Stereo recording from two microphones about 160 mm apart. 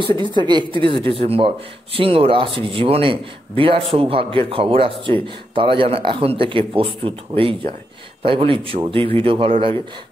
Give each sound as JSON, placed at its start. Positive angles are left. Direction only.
{"t": 0.2, "sound": "a man's voice", "side_deg": -30}